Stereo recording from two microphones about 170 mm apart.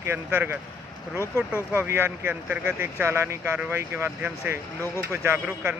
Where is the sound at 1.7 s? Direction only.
15° right (ahead or behind).